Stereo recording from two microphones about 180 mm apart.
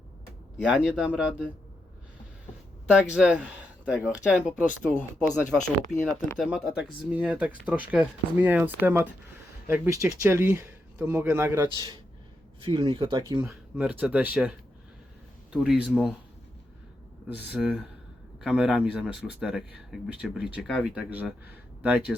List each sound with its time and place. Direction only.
0.6 s speech: 5° right (ahead or behind)
2.9 s speech: 5° right (ahead or behind)
6.0 s speech: 15° left (ahead or behind)
6.4 s speech: centre (ahead or behind); by 13.5 s 25° right (ahead or behind)
13.5 s speech: 5° right (ahead or behind)
15.5 s speech: 5° right (ahead or behind)
17.3 s speech: 5° right (ahead or behind)